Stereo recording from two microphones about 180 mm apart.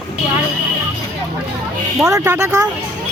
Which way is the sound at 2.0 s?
15° right (ahead or behind).